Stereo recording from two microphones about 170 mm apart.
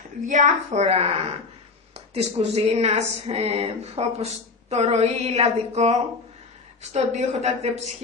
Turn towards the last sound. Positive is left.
turn(degrees=-40)  # may be behind; listen again after turning